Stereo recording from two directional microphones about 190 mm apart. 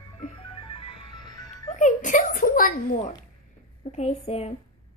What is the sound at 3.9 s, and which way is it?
Speech, 35° left (ahead or behind).